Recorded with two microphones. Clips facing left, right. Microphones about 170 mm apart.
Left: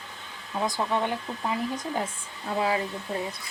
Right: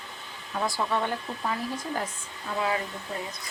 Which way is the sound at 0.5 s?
15° left (ahead or behind).